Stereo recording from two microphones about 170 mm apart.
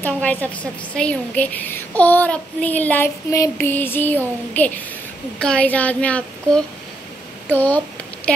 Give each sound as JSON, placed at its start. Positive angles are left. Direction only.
{"t": 0.0, "sound": "a child's voice", "side_deg": 10}